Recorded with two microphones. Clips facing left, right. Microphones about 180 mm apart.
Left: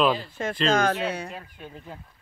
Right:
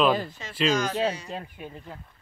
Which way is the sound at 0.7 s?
55° left (ahead or behind).